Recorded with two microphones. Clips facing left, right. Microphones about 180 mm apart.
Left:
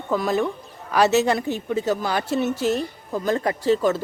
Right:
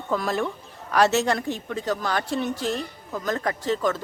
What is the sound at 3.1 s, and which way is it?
Speech, 30° left (ahead or behind).